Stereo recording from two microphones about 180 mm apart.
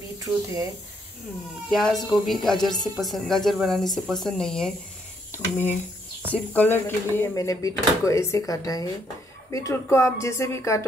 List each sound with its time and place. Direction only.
1.7 s a woman's voice: centre (ahead or behind)